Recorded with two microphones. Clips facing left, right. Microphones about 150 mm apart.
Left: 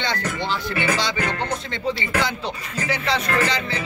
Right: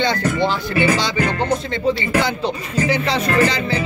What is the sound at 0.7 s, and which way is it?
Speech, 35° right (ahead or behind).